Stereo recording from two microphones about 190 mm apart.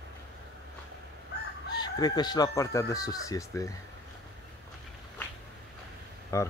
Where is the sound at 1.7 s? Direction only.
20° left (ahead or behind).